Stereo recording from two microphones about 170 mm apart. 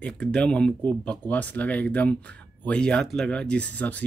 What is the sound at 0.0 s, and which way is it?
Speech, 5° left (ahead or behind).